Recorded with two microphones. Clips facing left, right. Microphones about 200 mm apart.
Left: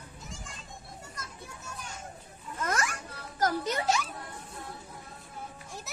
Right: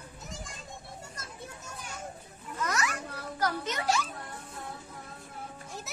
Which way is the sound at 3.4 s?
35° left (ahead or behind).